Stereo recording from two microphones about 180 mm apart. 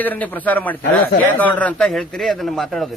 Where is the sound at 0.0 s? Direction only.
10° left (ahead or behind).